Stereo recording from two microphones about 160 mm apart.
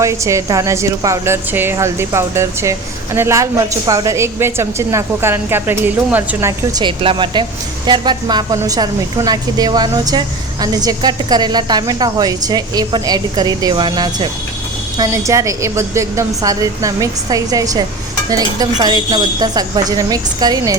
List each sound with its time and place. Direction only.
0.0 s a woman's voice: 20° right (ahead or behind)
6.7 s a woman's voice: 30° right (ahead or behind)